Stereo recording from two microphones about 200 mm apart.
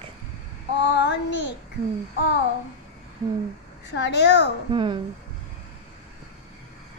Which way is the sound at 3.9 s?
60° left (ahead or behind).